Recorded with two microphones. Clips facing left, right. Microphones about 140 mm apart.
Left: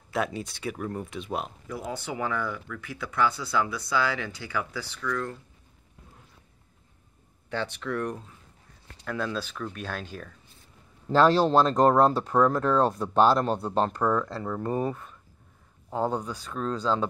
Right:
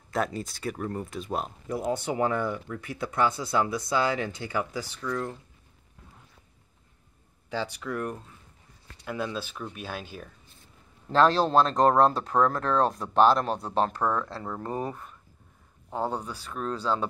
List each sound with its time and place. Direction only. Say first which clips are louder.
0.1 s speech: even; centre (ahead or behind)
2.0 s speech: right 4 dB; 30° right (ahead or behind)
7.4 s speech: left 1 dB; 10° right (ahead or behind)
11.1 s speech: left 2 dB; 5° left (ahead or behind)
14.2 s speech: left 4 dB; 15° right (ahead or behind)
15.9 s speech: left 2 dB; 5° right (ahead or behind)